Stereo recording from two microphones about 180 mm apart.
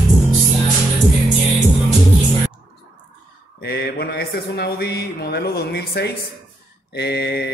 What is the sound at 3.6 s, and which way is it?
Mantra, 60° left (ahead or behind).